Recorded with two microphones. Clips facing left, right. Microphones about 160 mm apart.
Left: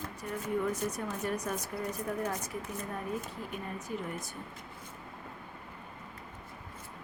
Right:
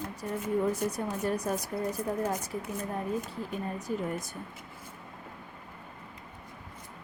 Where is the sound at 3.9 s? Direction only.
40° right (ahead or behind).